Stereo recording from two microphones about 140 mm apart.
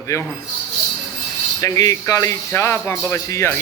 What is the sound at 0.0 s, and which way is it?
Speech, 20° left (ahead or behind).